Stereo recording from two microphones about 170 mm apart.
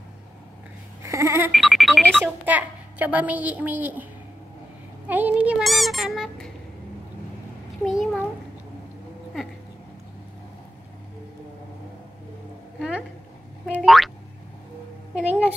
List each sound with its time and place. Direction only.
1.0 s a sound: 20° right (ahead or behind)
1.5 s speech: centre (ahead or behind)
2.2 s a child's voice: 10° right (ahead or behind)
5.0 s speech: 10° right (ahead or behind)
7.8 s speech: centre (ahead or behind)
13.7 s boing: centre (ahead or behind)
15.1 s a sound: 5° right (ahead or behind)